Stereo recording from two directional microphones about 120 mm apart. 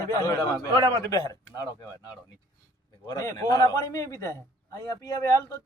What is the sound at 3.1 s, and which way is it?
A man's voice, 35° left (ahead or behind).